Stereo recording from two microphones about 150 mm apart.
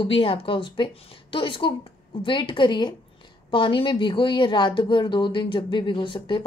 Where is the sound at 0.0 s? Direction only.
35° left (ahead or behind).